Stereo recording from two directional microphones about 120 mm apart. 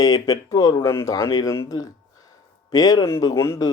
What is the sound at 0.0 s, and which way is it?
Speech, 30° left (ahead or behind).